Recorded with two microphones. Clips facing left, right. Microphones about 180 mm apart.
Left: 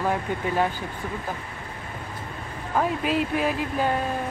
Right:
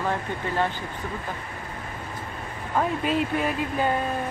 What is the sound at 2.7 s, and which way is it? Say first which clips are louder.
Speech: even; 5° left (ahead or behind).